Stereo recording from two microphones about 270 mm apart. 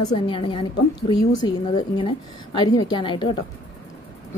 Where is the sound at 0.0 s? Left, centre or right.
Centre.